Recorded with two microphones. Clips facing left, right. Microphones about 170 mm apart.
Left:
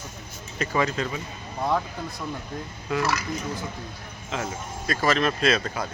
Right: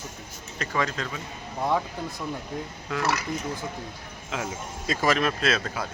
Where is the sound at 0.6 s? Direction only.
10° left (ahead or behind).